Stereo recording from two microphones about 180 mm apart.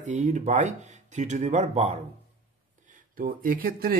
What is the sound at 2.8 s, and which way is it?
Speech, 50° right (ahead or behind).